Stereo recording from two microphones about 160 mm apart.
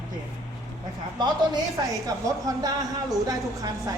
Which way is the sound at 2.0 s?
20° right (ahead or behind).